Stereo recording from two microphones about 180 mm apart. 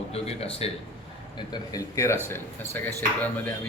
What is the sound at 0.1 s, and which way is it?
Speech, 35° left (ahead or behind).